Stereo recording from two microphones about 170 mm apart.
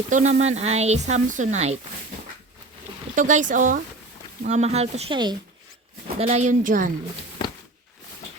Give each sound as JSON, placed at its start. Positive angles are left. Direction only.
{"t": 0.1, "sound": "speech", "side_deg": -45}
{"t": 3.2, "sound": "a woman's voice", "side_deg": -50}
{"t": 6.1, "sound": "a woman's voice", "side_deg": -40}